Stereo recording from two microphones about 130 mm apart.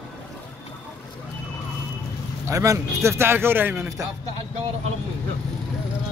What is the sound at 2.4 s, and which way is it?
Speech, 20° right (ahead or behind).